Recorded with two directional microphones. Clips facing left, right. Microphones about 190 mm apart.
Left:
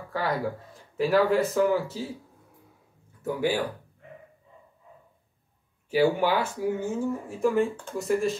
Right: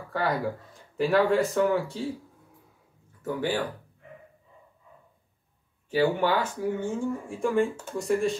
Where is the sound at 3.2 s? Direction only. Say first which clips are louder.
Left 2 dB; 10° left (ahead or behind).